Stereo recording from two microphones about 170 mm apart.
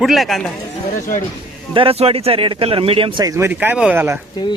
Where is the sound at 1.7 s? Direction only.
35° right (ahead or behind); by 4.2 s 15° right (ahead or behind).